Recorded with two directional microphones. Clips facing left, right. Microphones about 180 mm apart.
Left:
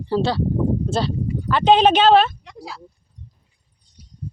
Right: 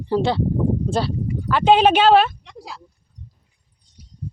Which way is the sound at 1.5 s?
10° right (ahead or behind).